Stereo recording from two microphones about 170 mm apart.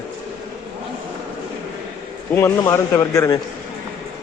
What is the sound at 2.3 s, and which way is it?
Speech, 15° left (ahead or behind).